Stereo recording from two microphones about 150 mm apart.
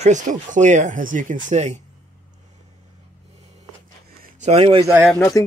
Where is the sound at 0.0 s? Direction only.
55° right (ahead or behind).